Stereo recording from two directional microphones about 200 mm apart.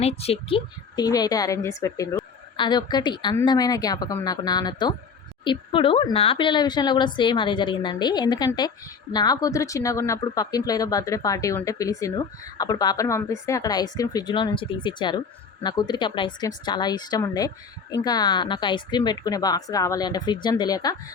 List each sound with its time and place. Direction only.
0.0 s a woman's voice: 30° left (ahead or behind)